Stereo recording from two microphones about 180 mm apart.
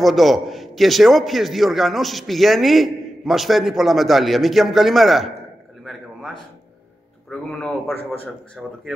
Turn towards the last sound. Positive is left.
turn(degrees=5)  # may be behind; listen again after turning